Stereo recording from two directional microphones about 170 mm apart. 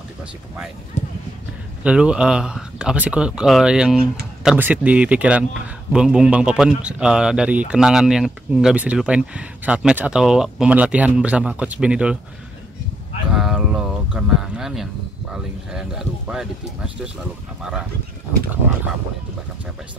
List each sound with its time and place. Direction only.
1.8 s speech: 5° right (ahead or behind)
13.3 s a sound: 5° right (ahead or behind)
15.7 s speech: 5° right (ahead or behind)